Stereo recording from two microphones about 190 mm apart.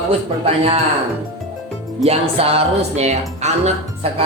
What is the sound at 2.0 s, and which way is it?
Speech, 30° right (ahead or behind).